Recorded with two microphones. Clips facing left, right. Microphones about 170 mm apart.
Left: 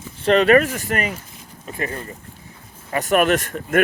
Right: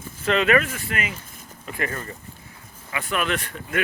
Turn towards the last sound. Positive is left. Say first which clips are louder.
# left 8 dB
turn(degrees=45)  # may be behind; listen again after turning